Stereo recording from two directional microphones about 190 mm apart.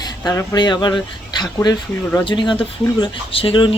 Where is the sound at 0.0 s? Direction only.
15° left (ahead or behind).